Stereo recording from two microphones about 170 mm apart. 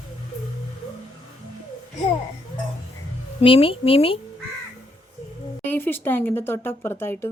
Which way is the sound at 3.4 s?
30° left (ahead or behind).